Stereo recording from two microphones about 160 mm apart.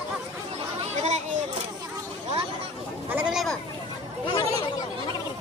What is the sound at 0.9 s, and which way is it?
Children playing, 45° right (ahead or behind).